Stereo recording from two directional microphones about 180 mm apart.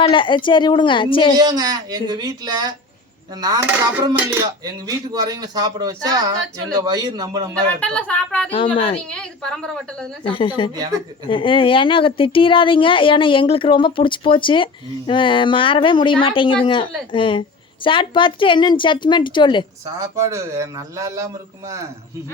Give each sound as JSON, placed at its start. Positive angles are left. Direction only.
{"t": 0.0, "sound": "speech", "side_deg": 25}
{"t": 1.4, "sound": "a man's voice", "side_deg": -20}
{"t": 4.6, "sound": "a man's voice", "side_deg": -20}
{"t": 7.8, "sound": "speech", "side_deg": 5}
{"t": 8.4, "sound": "speech", "side_deg": 30}
{"t": 9.0, "sound": "a woman's voice", "side_deg": 5}
{"t": 10.2, "sound": "speech", "side_deg": 30}
{"t": 19.8, "sound": "speech", "side_deg": -15}